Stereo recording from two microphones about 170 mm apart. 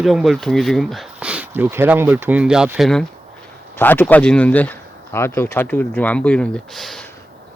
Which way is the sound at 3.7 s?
10° left (ahead or behind).